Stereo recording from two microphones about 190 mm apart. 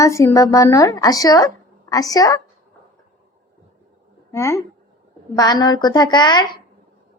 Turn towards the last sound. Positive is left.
turn(degrees=20)  # may be behind; listen again after turning